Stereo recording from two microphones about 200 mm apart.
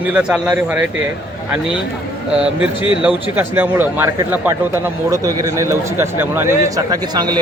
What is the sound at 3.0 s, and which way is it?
Speech, 10° right (ahead or behind).